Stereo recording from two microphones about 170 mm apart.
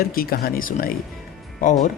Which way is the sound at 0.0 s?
60° left (ahead or behind).